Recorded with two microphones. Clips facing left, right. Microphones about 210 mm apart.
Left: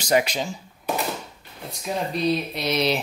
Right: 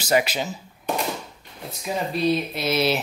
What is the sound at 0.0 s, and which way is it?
Speech, 5° right (ahead or behind).